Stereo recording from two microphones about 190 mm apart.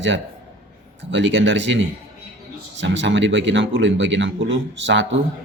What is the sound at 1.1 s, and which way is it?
Speech, 75° right (ahead or behind).